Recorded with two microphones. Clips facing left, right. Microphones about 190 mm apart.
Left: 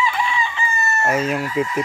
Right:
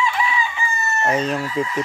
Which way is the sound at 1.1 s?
5° left (ahead or behind).